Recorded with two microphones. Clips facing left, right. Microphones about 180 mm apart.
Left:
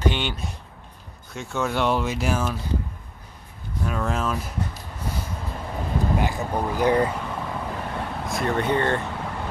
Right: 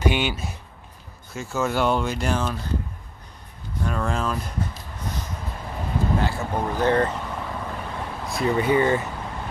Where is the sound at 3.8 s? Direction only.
5° left (ahead or behind).